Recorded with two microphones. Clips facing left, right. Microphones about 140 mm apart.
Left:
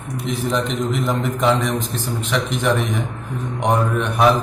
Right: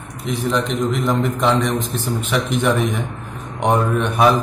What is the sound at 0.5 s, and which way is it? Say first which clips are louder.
A man's voice: right 2 dB; centre (ahead or behind).